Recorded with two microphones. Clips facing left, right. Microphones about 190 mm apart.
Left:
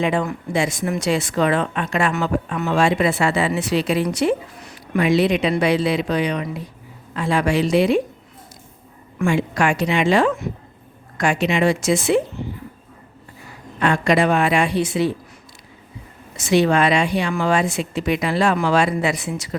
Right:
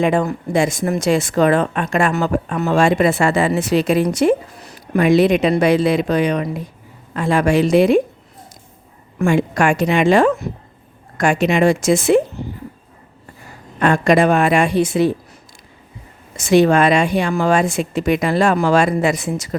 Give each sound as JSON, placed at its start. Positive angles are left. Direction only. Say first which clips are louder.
{"t": 0.0, "sound": "speech", "louder": "right 4 dB", "side_deg": -45}
{"t": 9.1, "sound": "speech", "louder": "right 4 dB", "side_deg": -45}
{"t": 13.7, "sound": "speech", "louder": "right 4 dB", "side_deg": -45}
{"t": 16.4, "sound": "speech", "louder": "right 4 dB", "side_deg": -50}